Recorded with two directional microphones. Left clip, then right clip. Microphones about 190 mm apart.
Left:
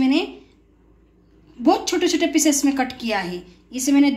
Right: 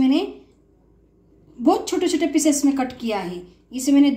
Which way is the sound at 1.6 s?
25° right (ahead or behind).